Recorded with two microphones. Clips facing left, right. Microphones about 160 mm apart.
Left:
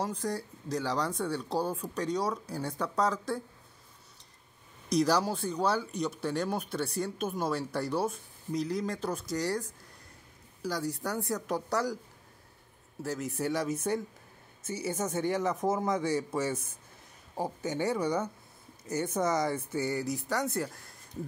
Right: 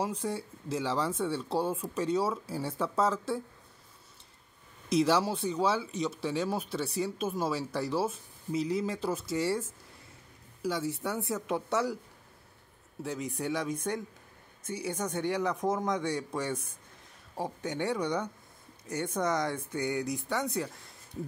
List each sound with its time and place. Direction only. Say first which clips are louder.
0.2 s speech: even; centre (ahead or behind)
4.8 s speech: right 1 dB; centre (ahead or behind)
13.0 s speech: left 1 dB; centre (ahead or behind)